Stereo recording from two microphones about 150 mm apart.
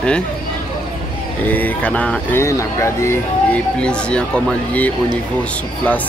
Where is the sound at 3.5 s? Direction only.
5° left (ahead or behind).